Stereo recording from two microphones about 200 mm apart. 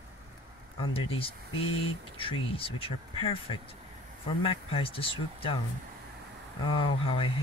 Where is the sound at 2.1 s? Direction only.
25° left (ahead or behind).